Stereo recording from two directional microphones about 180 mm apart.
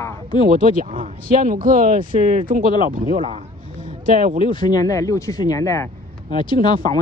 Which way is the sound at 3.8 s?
45° right (ahead or behind).